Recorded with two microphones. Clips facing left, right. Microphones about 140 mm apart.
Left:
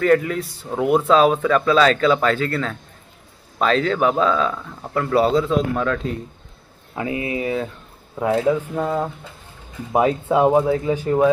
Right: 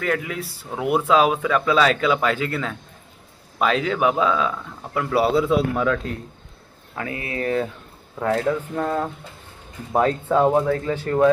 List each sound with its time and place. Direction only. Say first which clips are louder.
0.0 s speech: left 8 dB; 5° right (ahead or behind)
7.0 s speech: left 4 dB; 20° left (ahead or behind)